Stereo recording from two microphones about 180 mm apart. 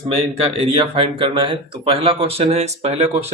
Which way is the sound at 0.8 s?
30° right (ahead or behind).